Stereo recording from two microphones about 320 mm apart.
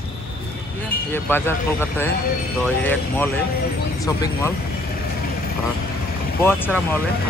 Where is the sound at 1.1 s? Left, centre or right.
Centre.